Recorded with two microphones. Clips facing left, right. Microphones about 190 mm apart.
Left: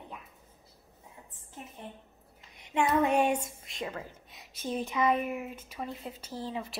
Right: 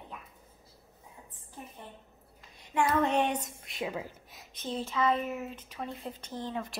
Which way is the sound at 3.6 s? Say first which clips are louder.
Right 2 dB; 5° right (ahead or behind).